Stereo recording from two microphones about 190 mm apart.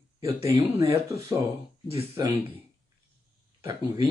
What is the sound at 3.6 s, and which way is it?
Speech, 15° right (ahead or behind).